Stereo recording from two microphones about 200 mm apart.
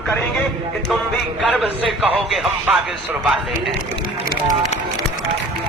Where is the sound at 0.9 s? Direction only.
Centre (ahead or behind).